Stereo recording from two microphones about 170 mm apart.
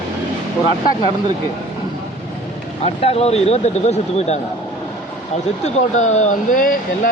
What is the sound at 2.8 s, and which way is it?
Speech, 35° left (ahead or behind).